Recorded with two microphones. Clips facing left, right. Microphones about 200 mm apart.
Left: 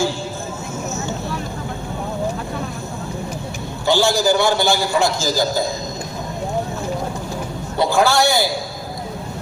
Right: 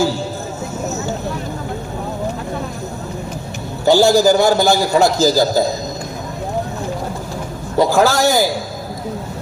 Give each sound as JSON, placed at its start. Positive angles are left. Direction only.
{"t": 3.8, "sound": "a man's voice", "side_deg": -40}
{"t": 7.8, "sound": "a man's voice", "side_deg": -40}